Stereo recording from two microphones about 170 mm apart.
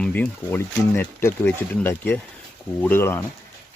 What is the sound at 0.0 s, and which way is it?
Speech, 10° left (ahead or behind).